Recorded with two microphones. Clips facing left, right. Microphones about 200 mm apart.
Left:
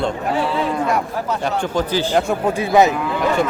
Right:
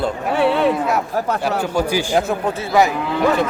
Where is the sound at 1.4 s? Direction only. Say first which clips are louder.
Right 1 dB; 10° right (ahead or behind).